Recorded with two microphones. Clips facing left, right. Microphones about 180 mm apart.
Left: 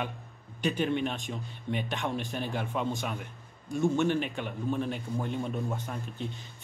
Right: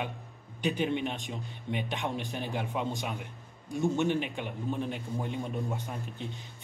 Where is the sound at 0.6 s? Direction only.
15° right (ahead or behind).